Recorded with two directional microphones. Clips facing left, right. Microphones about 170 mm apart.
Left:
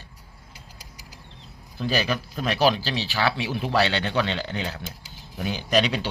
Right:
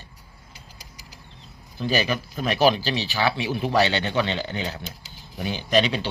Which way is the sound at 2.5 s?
10° right (ahead or behind).